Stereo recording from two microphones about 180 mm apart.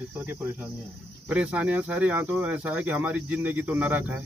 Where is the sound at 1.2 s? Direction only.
5° right (ahead or behind).